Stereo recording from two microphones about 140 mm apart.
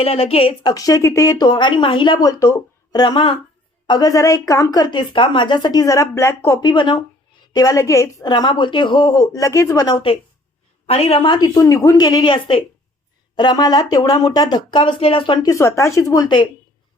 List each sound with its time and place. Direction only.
0.0 s a woman's voice: 45° left (ahead or behind)
0.7 s a woman's voice: 25° left (ahead or behind)
9.8 s a woman's voice: 35° left (ahead or behind)
15.4 s speech: 20° left (ahead or behind)